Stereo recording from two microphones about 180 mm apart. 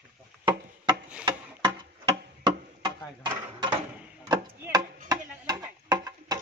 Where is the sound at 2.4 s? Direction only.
25° right (ahead or behind).